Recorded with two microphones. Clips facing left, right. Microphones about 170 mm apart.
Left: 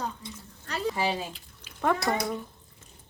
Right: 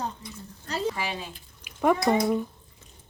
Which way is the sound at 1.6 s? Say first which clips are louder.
Right 4 dB; 15° right (ahead or behind).